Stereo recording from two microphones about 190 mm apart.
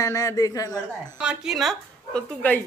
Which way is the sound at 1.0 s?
5° right (ahead or behind).